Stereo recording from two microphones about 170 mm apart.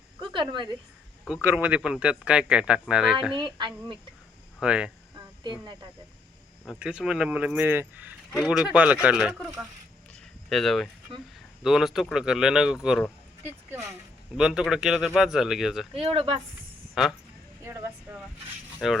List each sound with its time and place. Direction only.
0.2 s speech: 30° right (ahead or behind)
1.4 s speech: 10° right (ahead or behind)
3.3 s speech: 25° right (ahead or behind)
4.6 s speech: 5° right (ahead or behind)
5.1 s cricket: 25° right (ahead or behind)
6.7 s speech: 5° right (ahead or behind)
10.5 s speech: centre (ahead or behind)
14.3 s speech: 5° right (ahead or behind)
15.9 s speech: 35° right (ahead or behind)
16.9 s speech: centre (ahead or behind)
17.6 s a sound: 15° right (ahead or behind)
18.8 s speech: centre (ahead or behind)